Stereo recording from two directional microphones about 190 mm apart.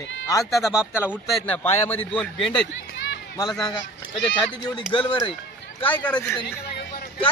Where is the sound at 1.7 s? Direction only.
10° left (ahead or behind).